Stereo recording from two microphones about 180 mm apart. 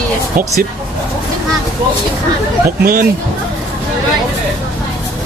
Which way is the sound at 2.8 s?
60° right (ahead or behind).